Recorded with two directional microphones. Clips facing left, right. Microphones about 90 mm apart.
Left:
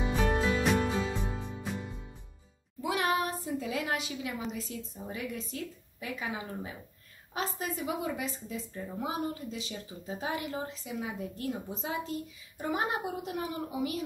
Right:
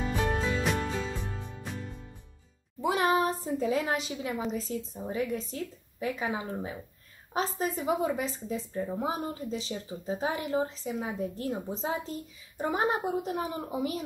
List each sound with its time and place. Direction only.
0.2 s music: 5° left (ahead or behind)
2.8 s a woman's voice: 35° right (ahead or behind)